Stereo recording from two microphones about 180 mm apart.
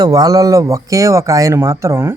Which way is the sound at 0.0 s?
20° right (ahead or behind).